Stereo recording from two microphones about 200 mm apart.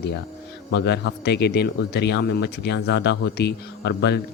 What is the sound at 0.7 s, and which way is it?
Speech, 60° left (ahead or behind).